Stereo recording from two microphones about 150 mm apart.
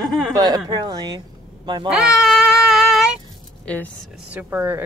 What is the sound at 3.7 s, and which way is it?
Speech, 10° left (ahead or behind).